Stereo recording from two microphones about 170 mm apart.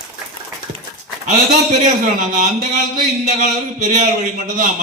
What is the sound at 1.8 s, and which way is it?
A man's voice, 45° right (ahead or behind).